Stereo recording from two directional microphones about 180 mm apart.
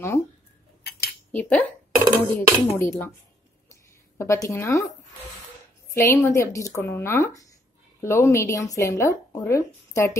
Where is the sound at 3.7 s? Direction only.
15° left (ahead or behind).